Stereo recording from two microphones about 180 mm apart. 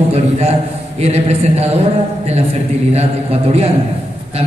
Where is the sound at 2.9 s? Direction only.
35° right (ahead or behind).